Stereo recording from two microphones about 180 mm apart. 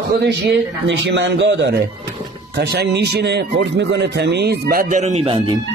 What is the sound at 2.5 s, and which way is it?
Speech, 65° right (ahead or behind).